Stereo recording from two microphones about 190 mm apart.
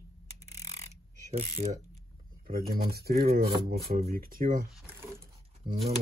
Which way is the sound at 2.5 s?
50° right (ahead or behind).